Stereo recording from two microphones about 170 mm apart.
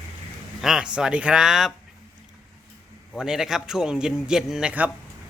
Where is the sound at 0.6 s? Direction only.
5° right (ahead or behind).